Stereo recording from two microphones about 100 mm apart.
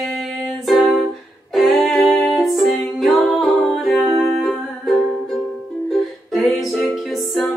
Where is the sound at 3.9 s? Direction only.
20° left (ahead or behind).